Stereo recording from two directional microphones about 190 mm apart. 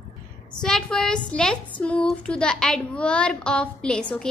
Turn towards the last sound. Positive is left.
turn(degrees=5)  # may be behind; listen again after turning